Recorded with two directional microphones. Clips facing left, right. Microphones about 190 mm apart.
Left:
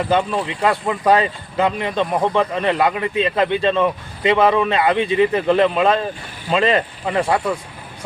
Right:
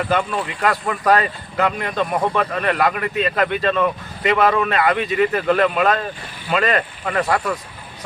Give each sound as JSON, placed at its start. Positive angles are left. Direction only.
{"t": 0.1, "sound": "speech", "side_deg": 25}